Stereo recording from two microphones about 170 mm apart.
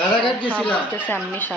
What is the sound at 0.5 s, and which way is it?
Speech, 5° left (ahead or behind).